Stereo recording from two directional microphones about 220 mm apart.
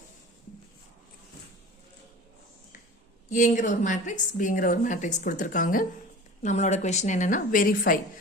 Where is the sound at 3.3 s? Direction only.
35° left (ahead or behind).